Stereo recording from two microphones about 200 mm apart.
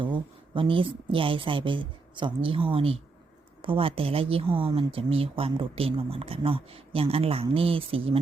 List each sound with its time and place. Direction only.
0.0 s speech: 25° right (ahead or behind)